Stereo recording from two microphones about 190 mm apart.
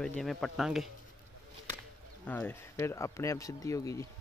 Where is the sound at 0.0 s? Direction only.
Centre (ahead or behind).